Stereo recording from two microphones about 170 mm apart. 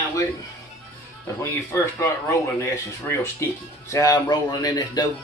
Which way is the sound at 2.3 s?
15° left (ahead or behind).